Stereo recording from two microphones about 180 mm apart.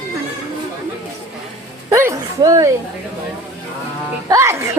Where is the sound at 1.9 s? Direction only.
15° right (ahead or behind).